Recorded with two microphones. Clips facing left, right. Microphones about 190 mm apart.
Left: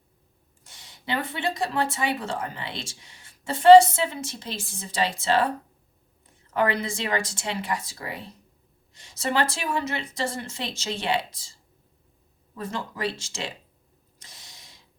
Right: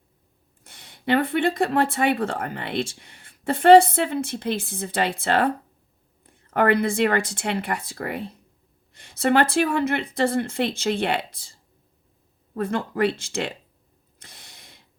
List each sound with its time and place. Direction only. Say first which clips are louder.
0.6 s speech: right 9 dB; 55° right (ahead or behind)
12.5 s speech: right 8 dB; 55° right (ahead or behind)
14.2 s a sound: right 2 dB; 55° right (ahead or behind)